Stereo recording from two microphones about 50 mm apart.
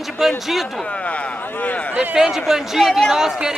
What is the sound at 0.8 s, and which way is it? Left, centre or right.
Speech, left.